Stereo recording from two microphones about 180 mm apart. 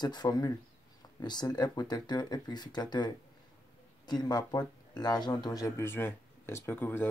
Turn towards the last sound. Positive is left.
turn(degrees=10)  # may be behind; listen again after turning